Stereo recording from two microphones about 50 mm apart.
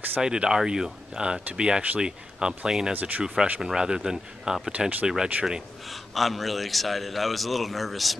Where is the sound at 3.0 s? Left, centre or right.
Right.